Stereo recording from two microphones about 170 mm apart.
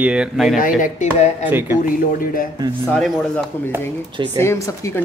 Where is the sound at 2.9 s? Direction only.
5° left (ahead or behind).